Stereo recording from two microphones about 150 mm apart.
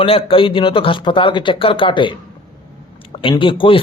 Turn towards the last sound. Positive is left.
turn(degrees=35)  # may be behind; listen again after turning